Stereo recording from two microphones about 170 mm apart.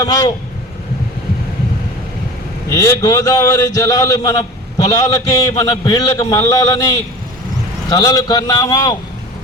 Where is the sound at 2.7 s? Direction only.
20° left (ahead or behind).